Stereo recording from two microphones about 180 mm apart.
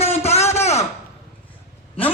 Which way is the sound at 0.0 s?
35° left (ahead or behind).